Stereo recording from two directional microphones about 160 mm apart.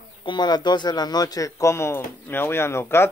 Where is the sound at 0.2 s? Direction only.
30° left (ahead or behind).